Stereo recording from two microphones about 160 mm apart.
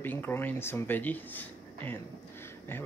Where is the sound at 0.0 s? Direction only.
10° left (ahead or behind).